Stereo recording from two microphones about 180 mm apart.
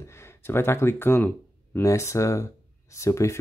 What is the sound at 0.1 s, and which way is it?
Speech, 15° left (ahead or behind).